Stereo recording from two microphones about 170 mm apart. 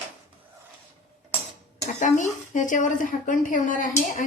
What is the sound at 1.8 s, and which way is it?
Speech, 45° left (ahead or behind).